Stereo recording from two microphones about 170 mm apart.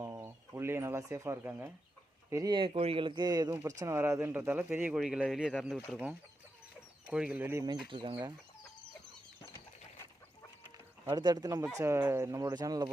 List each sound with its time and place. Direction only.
0.0 s speech: 15° right (ahead or behind)
7.9 s speech: 30° right (ahead or behind)
11.1 s speech: 25° right (ahead or behind)